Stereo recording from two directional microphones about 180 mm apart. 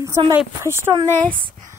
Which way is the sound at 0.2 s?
20° right (ahead or behind).